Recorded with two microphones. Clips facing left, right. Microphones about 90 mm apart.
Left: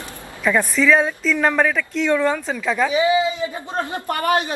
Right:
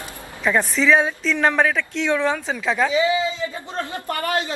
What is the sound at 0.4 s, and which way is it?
A woman's voice, centre (ahead or behind).